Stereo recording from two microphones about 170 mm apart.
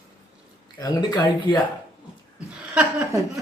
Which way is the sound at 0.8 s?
25° left (ahead or behind).